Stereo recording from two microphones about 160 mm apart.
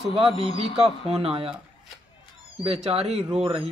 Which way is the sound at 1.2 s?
35° right (ahead or behind).